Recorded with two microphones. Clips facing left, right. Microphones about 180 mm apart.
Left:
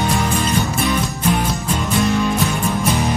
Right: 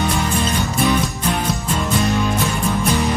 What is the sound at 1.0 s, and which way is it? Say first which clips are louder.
Music: left 2 dB; centre (ahead or behind).